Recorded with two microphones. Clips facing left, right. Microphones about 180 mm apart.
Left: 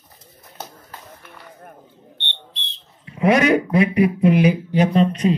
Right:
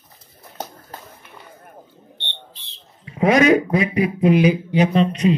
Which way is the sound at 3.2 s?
60° left (ahead or behind).